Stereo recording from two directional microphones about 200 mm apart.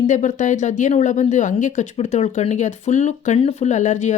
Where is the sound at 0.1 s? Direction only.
40° left (ahead or behind).